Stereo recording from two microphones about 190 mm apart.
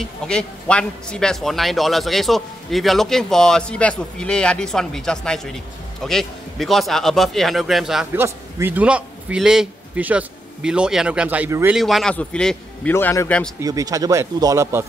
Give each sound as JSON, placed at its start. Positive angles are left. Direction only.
{"t": 0.0, "sound": "speech", "side_deg": 5}
{"t": 11.8, "sound": "speech", "side_deg": 0}
{"t": 13.6, "sound": "speech", "side_deg": -20}